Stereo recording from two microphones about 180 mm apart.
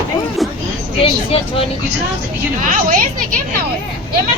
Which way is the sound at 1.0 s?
30° left (ahead or behind).